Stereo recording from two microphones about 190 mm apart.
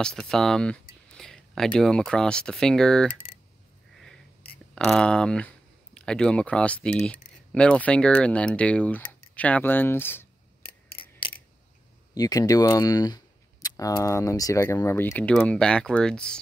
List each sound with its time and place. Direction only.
0.0 s speech: 5° left (ahead or behind)
4.7 s speech: 5° left (ahead or behind)
11.0 s clock: 25° left (ahead or behind)
12.1 s speech: 20° left (ahead or behind); by 16.3 s 5° left (ahead or behind)